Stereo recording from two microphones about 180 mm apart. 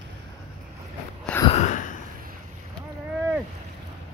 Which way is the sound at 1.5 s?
40° left (ahead or behind).